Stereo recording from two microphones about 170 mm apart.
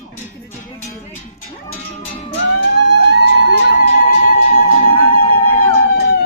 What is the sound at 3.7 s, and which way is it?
Music, 55° left (ahead or behind).